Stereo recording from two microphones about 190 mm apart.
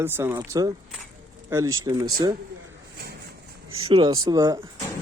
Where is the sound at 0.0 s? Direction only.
10° right (ahead or behind).